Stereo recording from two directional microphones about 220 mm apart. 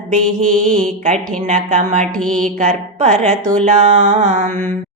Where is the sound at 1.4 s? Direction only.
35° right (ahead or behind).